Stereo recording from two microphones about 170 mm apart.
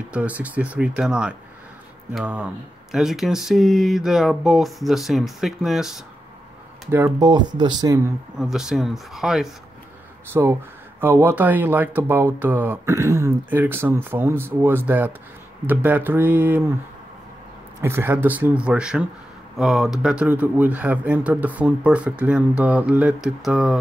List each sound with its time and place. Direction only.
0.1 s speech: 10° right (ahead or behind)
6.9 s speech: 20° right (ahead or behind)
8.4 s speech: centre (ahead or behind)
10.3 s speech: 15° right (ahead or behind)
17.8 s speech: 15° right (ahead or behind)